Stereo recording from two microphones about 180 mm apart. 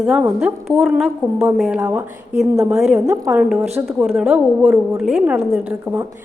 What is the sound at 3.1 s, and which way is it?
A woman's voice, 15° right (ahead or behind).